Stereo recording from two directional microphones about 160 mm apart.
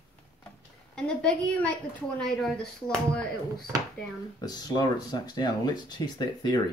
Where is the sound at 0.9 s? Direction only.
5° left (ahead or behind).